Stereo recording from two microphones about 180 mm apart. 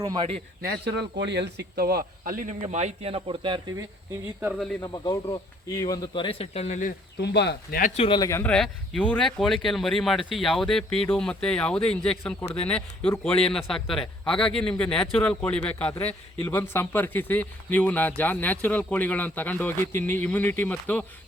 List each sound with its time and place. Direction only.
0.0 s speech: 20° right (ahead or behind)
1.1 s speech: 75° right (ahead or behind); by 2.6 s 50° right (ahead or behind)
2.6 s speech: 35° right (ahead or behind)
4.8 s speech: 20° left (ahead or behind); by 6.9 s 40° left (ahead or behind)
7.2 s speech: 70° left (ahead or behind)
7.8 s speech: 45° left (ahead or behind)
8.0 s speech: 25° left (ahead or behind)
8.3 s a man's voice: 15° left (ahead or behind)
8.5 s a man's voice: 5° left (ahead or behind)